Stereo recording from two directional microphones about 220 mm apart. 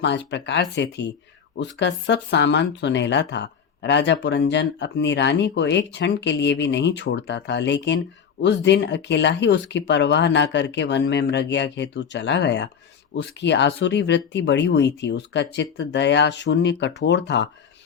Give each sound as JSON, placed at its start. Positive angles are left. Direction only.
{"t": 0.0, "sound": "speech", "side_deg": 55}